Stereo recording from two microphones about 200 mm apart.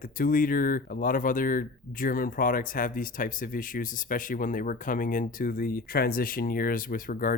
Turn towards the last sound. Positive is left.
turn(degrees=45)  # may be behind; listen again after turning